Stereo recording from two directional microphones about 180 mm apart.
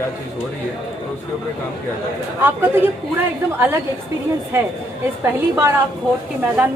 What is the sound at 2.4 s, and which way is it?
Speech, 10° right (ahead or behind).